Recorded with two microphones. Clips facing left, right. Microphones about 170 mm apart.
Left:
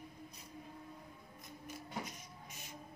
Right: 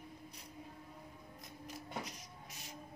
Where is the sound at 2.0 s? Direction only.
80° right.